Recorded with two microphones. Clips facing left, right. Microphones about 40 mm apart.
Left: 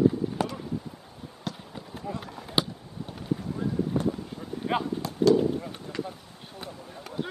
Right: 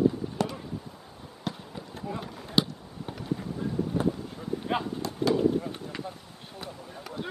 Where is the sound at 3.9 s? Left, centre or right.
Centre.